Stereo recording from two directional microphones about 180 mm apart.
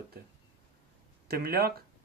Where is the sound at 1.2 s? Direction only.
60° right (ahead or behind).